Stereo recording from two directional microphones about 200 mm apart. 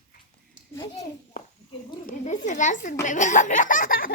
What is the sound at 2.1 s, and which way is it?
Speech, 40° left (ahead or behind).